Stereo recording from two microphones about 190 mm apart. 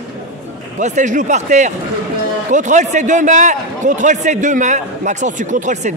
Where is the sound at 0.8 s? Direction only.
40° right (ahead or behind).